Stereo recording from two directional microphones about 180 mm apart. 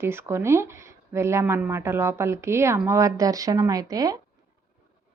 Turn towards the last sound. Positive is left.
turn(degrees=-20)  # may be behind; listen again after turning